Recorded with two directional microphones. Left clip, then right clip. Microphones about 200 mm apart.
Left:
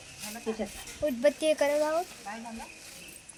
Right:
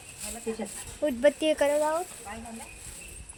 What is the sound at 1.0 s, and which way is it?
Speech, 30° right (ahead or behind).